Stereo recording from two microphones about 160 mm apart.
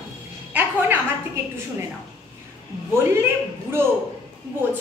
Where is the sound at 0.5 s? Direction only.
10° right (ahead or behind).